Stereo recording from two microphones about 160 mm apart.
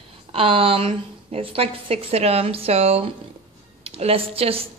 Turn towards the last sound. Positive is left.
turn(degrees=-35)  # may be behind; listen again after turning